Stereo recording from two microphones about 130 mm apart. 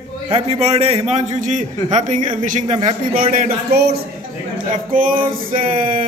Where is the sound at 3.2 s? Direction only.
90° right.